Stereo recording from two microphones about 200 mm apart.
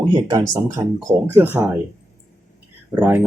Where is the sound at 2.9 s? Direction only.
10° right (ahead or behind).